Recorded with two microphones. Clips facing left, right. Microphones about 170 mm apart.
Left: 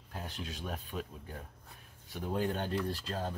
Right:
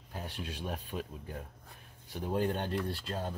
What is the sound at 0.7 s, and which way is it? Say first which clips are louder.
Speech: right 1 dB; 40° right (ahead or behind).